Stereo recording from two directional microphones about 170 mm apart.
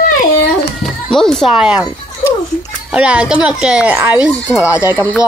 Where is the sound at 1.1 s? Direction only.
5° left (ahead or behind).